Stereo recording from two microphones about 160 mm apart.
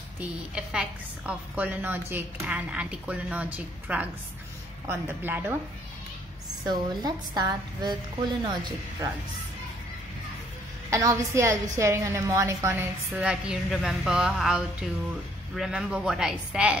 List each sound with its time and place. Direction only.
0.2 s a woman's voice: 5° right (ahead or behind)
7.0 s a woman's voice: 25° right (ahead or behind)
10.9 s a woman's voice: 20° right (ahead or behind)